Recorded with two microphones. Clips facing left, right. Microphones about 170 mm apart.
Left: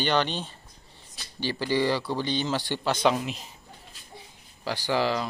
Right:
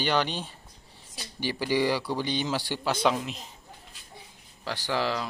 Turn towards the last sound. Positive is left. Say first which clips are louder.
# left 3 dB
turn(degrees=0)  # may be behind; listen again after turning